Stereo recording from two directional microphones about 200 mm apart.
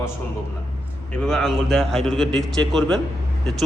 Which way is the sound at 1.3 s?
Centre (ahead or behind).